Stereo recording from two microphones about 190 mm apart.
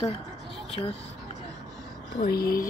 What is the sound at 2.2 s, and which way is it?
Speech, 55° left (ahead or behind).